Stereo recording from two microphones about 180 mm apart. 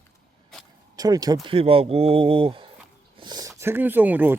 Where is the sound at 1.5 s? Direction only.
30° right (ahead or behind); by 4.4 s 10° right (ahead or behind).